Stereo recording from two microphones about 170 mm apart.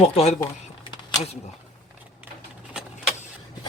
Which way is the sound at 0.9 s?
40° left (ahead or behind).